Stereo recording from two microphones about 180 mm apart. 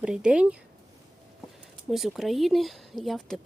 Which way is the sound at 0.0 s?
5° right (ahead or behind).